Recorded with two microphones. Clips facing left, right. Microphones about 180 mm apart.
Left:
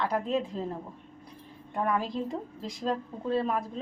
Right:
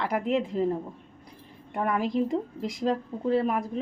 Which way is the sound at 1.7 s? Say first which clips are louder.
Right 3 dB; 15° right (ahead or behind).